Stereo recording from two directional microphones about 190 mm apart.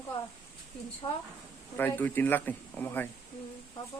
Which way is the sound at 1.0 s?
30° left (ahead or behind).